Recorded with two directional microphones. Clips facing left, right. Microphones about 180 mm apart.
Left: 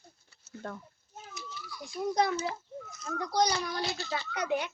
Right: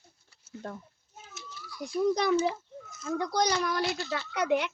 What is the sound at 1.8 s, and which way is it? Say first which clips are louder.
Speech: right 3 dB; 85° right.